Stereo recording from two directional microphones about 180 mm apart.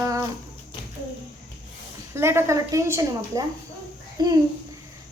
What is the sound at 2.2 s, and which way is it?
A woman's voice, 15° right (ahead or behind).